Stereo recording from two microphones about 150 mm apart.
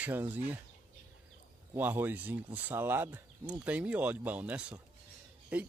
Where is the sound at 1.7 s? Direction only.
15° right (ahead or behind).